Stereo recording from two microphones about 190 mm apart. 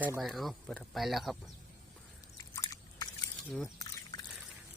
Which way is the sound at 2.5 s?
20° left (ahead or behind).